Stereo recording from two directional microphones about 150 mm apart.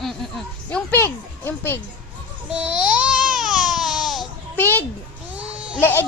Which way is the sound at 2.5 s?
5° right (ahead or behind).